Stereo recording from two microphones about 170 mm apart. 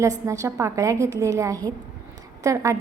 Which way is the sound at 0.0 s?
20° right (ahead or behind).